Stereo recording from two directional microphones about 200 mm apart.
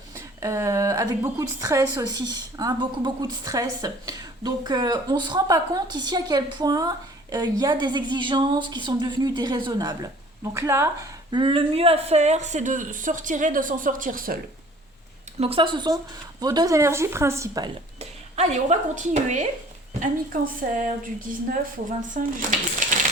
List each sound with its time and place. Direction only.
0.3 s a woman's voice: 15° right (ahead or behind); by 14.3 s 45° right (ahead or behind)
15.4 s a woman's voice: 25° right (ahead or behind)
18.0 s a woman's voice: 35° right (ahead or behind)